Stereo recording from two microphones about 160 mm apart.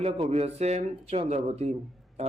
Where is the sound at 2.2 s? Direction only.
40° right (ahead or behind).